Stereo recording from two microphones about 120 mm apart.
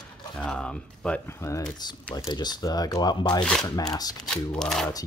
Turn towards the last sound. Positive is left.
turn(degrees=5)  # may be behind; listen again after turning